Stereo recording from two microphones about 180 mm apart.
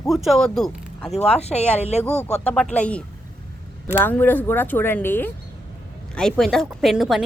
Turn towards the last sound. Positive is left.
turn(degrees=0)  # may be behind; listen again after turning